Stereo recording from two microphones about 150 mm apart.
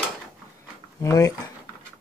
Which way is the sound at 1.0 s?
20° left (ahead or behind).